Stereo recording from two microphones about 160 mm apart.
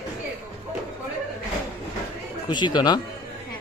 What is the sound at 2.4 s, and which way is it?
Speech, 30° left (ahead or behind).